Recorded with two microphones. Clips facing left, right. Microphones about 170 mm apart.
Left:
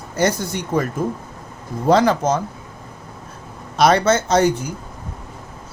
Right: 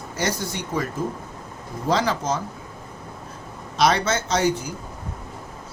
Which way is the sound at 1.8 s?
55° left (ahead or behind).